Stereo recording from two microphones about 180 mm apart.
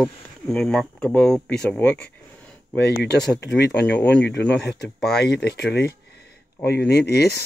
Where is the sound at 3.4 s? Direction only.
70° left (ahead or behind).